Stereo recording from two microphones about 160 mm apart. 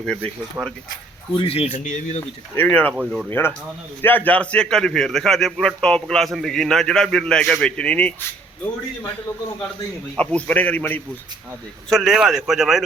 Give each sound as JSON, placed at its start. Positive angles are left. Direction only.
{"t": 0.0, "sound": "a man's voice", "side_deg": 5}
{"t": 0.6, "sound": "speech", "side_deg": -10}
{"t": 1.3, "sound": "speech", "side_deg": 35}
{"t": 2.6, "sound": "a man's voice", "side_deg": 10}
{"t": 2.9, "sound": "a man's voice", "side_deg": -5}
{"t": 3.2, "sound": "a man's voice", "side_deg": 10}
{"t": 10.2, "sound": "a man's voice", "side_deg": 10}
{"t": 11.9, "sound": "a man's voice", "side_deg": 0}